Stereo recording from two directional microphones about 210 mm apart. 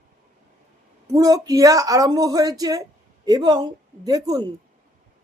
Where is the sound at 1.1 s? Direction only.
15° right (ahead or behind).